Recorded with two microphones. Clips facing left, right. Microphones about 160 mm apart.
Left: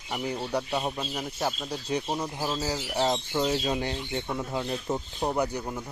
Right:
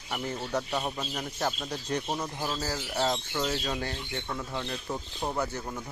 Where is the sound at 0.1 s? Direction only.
10° left (ahead or behind).